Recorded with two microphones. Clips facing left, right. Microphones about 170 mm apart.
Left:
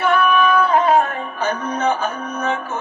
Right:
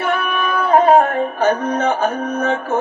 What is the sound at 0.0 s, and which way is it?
Music, 50° right (ahead or behind).